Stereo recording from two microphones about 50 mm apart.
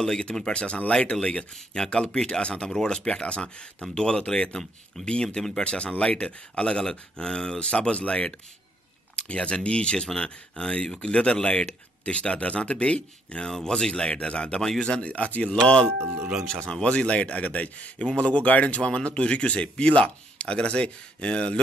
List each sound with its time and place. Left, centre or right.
0.0 s speech: centre
13.5 s speech: centre
14.6 s speech: centre
14.9 s speech: left
15.5 s speech: centre